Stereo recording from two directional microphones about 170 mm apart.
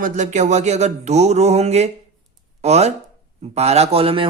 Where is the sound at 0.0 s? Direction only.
45° right (ahead or behind).